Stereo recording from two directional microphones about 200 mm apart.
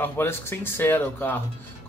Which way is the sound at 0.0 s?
10° left (ahead or behind).